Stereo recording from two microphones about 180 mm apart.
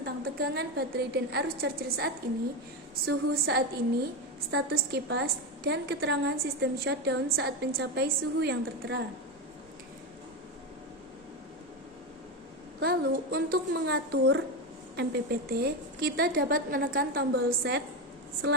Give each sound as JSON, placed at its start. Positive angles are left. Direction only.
{"t": 0.0, "sound": "a woman's voice", "side_deg": -60}
{"t": 12.8, "sound": "a woman's voice", "side_deg": -60}